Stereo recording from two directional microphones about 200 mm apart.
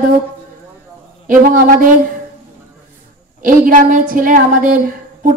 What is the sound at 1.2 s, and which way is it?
Speech, 40° right (ahead or behind).